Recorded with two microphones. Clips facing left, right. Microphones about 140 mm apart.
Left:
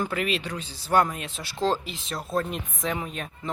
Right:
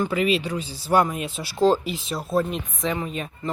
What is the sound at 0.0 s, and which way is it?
Speech, centre (ahead or behind).